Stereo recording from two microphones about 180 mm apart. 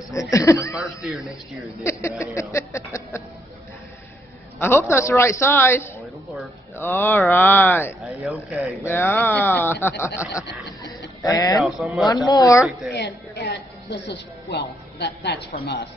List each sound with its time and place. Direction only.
0.1 s speech: 20° left (ahead or behind)
1.9 s speech: 15° left (ahead or behind)
4.6 s speech: 10° left (ahead or behind)
8.0 s speech: 5° right (ahead or behind)
8.8 s speech: 10° left (ahead or behind)
11.8 s speech: centre (ahead or behind)
12.3 s speech: 20° left (ahead or behind)
12.8 s speech: 70° left (ahead or behind)